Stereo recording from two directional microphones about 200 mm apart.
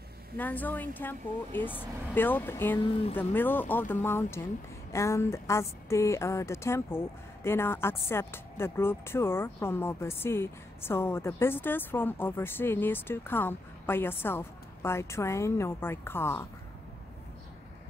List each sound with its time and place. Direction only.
0.4 s speech: 10° left (ahead or behind)
2.9 s speech: 30° left (ahead or behind)
3.2 s speech: 10° left (ahead or behind)